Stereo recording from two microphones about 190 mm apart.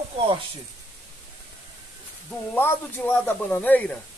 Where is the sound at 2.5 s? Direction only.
10° left (ahead or behind).